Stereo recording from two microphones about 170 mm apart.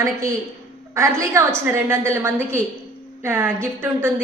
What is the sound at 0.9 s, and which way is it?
A woman's voice, 15° right (ahead or behind).